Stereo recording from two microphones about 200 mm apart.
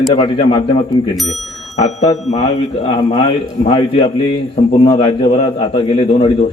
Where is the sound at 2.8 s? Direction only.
25° left (ahead or behind).